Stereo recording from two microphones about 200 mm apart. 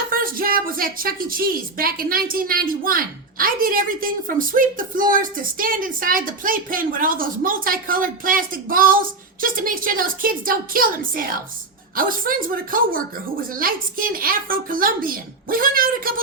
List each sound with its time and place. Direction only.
0.1 s a woman's voice: 45° right (ahead or behind)